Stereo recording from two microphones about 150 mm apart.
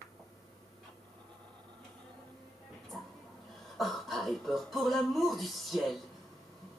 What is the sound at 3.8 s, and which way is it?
Speech, centre (ahead or behind).